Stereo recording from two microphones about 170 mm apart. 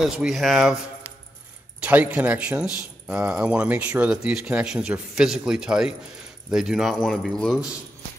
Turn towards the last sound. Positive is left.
turn(degrees=5)  # may be behind; listen again after turning